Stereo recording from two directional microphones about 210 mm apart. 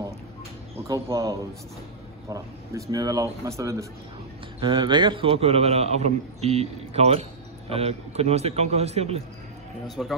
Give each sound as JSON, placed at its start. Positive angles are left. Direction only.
{"t": 0.8, "sound": "a man's voice", "side_deg": -15}
{"t": 9.8, "sound": "a man's voice", "side_deg": 0}